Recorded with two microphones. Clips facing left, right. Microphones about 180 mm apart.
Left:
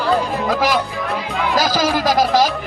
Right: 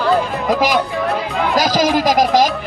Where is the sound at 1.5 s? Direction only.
15° right (ahead or behind).